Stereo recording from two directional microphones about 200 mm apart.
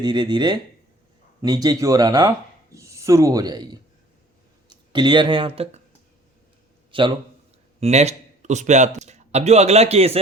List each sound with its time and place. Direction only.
0.0 s a man's voice: 20° right (ahead or behind)
6.9 s speech: 25° right (ahead or behind)